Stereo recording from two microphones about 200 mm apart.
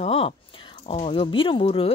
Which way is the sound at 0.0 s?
30° left (ahead or behind).